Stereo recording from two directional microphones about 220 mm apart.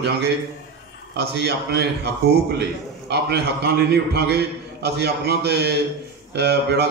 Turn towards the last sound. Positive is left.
turn(degrees=-50)  # may be behind; listen again after turning